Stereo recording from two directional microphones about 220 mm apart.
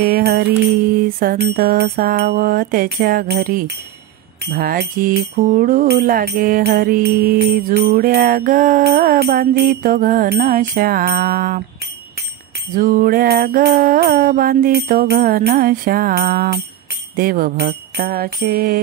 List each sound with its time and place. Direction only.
0.1 s mantra: 45° right (ahead or behind)
1.0 s music: 40° right (ahead or behind)
12.7 s music: 40° right (ahead or behind)